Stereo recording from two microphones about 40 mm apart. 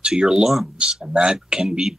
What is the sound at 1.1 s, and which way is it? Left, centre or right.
Speech, right.